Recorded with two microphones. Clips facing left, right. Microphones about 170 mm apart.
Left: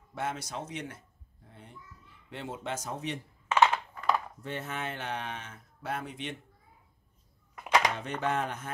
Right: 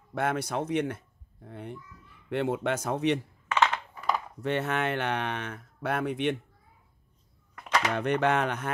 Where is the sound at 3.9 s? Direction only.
5° right (ahead or behind).